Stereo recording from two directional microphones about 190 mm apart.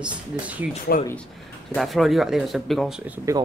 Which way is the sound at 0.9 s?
65° left (ahead or behind).